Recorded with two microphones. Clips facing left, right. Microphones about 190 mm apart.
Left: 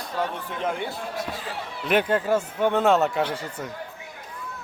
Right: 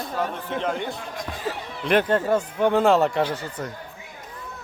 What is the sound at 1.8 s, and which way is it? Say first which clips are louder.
Speech: right 2 dB; 5° left (ahead or behind).